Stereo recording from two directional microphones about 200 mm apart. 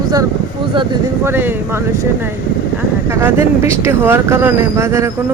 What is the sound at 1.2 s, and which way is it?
Speech, 10° right (ahead or behind).